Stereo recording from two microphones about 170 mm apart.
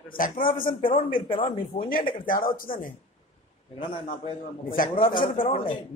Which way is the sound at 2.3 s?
55° left (ahead or behind).